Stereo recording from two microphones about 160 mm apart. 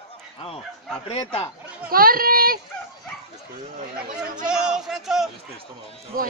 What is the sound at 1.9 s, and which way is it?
Speech, 65° right (ahead or behind).